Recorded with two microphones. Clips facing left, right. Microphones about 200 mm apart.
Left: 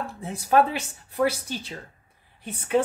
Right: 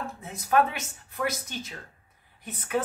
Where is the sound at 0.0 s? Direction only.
30° left (ahead or behind).